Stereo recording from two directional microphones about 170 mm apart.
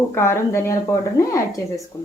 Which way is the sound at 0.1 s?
15° left (ahead or behind).